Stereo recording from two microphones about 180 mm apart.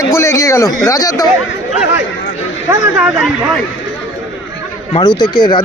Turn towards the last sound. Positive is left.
turn(degrees=25)  # may be behind; listen again after turning